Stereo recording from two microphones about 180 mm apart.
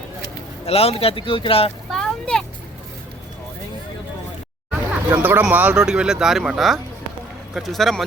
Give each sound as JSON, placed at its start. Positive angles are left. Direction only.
{"t": 0.6, "sound": "speech", "side_deg": 35}
{"t": 1.9, "sound": "a sound", "side_deg": 5}
{"t": 5.0, "sound": "speech", "side_deg": -10}